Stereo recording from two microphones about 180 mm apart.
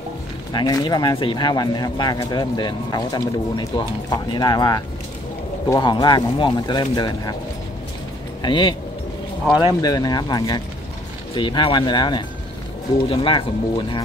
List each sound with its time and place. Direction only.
0.5 s speech: 25° left (ahead or behind)
8.4 s speech: 25° left (ahead or behind)
9.8 s speech: 20° left (ahead or behind)